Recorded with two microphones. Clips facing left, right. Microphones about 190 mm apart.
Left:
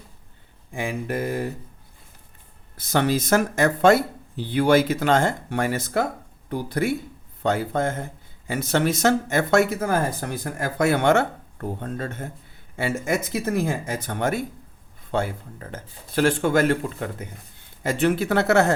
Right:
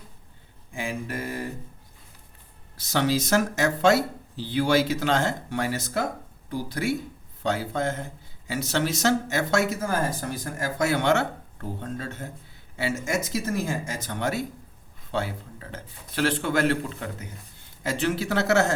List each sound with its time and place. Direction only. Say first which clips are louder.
0.7 s a man's voice: left 4 dB; 60° left (ahead or behind)
2.7 s a man's voice: left 2 dB; 55° left (ahead or behind)
17.8 s a man's voice: left 5 dB; 55° left (ahead or behind)